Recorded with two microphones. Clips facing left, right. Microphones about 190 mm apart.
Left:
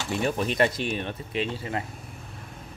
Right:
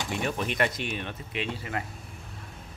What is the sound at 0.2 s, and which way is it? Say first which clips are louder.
Speech: left 5 dB; 35° left (ahead or behind).